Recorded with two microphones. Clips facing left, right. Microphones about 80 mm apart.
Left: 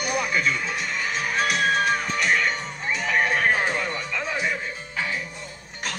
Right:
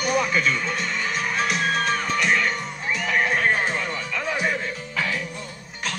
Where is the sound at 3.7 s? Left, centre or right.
Left.